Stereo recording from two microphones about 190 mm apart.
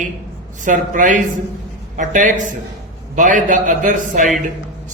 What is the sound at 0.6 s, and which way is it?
A man's voice, 40° right (ahead or behind).